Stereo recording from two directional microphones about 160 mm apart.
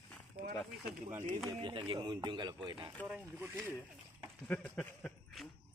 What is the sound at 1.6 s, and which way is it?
Speech, 30° right (ahead or behind).